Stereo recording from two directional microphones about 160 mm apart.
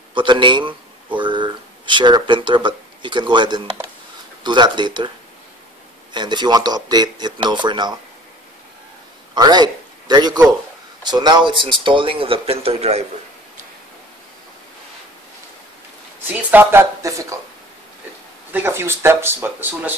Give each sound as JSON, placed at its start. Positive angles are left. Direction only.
{"t": 0.1, "sound": "speech", "side_deg": -30}
{"t": 6.1, "sound": "speech", "side_deg": -30}
{"t": 9.3, "sound": "a man's voice", "side_deg": -25}
{"t": 16.3, "sound": "speech", "side_deg": -10}
{"t": 18.5, "sound": "speech", "side_deg": -15}